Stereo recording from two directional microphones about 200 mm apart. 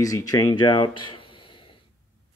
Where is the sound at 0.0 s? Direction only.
15° left (ahead or behind).